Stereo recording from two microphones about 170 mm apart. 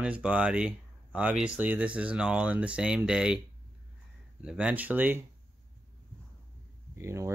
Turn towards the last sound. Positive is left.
turn(degrees=-15)  # may be behind; listen again after turning